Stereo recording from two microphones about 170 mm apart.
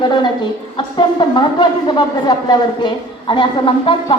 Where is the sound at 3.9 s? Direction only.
30° left (ahead or behind).